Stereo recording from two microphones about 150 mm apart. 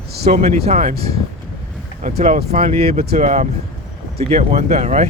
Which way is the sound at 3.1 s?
55° right (ahead or behind).